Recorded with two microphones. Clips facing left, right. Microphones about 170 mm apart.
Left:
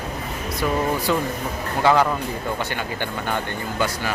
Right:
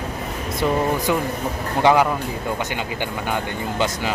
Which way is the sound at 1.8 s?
15° right (ahead or behind).